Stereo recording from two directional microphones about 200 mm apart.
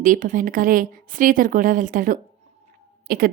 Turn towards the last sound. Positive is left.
turn(degrees=-45)  # may be behind; listen again after turning